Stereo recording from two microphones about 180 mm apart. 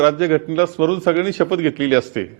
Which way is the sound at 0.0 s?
15° right (ahead or behind).